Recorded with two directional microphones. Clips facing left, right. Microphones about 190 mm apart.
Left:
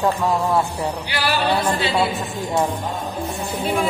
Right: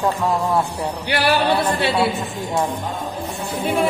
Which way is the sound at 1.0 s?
60° right (ahead or behind).